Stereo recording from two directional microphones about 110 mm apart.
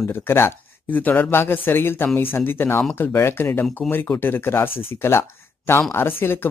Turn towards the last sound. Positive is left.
turn(degrees=20)  # may be behind; listen again after turning